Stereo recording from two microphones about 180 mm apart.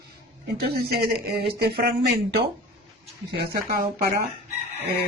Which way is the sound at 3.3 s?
65° right (ahead or behind).